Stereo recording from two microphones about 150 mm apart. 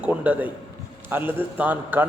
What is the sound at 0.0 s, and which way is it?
A man's voice, 10° right (ahead or behind).